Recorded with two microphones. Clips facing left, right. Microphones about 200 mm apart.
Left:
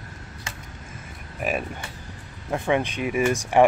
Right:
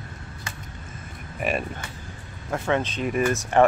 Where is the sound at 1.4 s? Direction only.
5° left (ahead or behind).